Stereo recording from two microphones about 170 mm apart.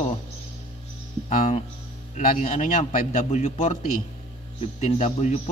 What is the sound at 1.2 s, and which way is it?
A man's voice, 45° left (ahead or behind).